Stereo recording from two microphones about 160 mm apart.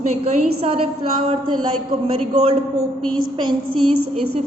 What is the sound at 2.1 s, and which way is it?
A woman's voice, 35° right (ahead or behind).